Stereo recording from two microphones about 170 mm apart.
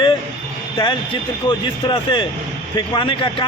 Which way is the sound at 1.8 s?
30° left (ahead or behind).